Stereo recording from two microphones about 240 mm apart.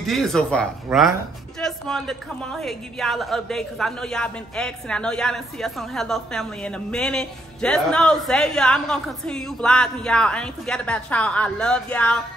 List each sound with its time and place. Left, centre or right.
0.0 s a woman's voice: centre